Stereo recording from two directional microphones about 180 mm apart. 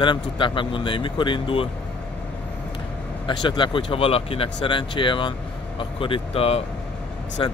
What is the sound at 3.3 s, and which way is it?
Speech, 25° left (ahead or behind).